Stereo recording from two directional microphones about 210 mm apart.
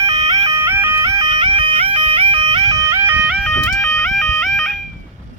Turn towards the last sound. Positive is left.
turn(degrees=0)  # may be behind; listen again after turning